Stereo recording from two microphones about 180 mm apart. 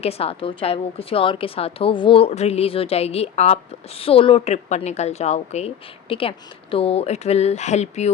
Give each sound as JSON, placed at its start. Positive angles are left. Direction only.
{"t": 0.0, "sound": "a woman's voice", "side_deg": 35}